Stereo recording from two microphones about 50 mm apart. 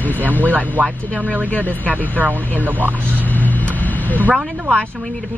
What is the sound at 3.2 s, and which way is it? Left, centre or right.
Vehicle, left.